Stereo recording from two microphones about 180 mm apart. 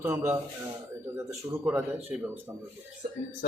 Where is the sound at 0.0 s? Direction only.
10° right (ahead or behind).